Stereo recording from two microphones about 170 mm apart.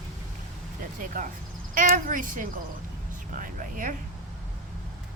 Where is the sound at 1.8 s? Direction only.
55° right (ahead or behind).